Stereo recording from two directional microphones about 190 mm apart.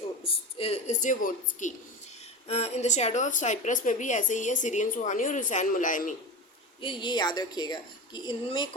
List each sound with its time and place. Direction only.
0.3 s a woman's voice: 30° left (ahead or behind)
6.8 s a woman's voice: 25° left (ahead or behind)